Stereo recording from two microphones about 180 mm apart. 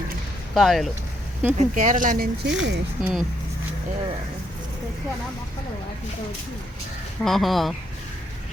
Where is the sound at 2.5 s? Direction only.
90° right.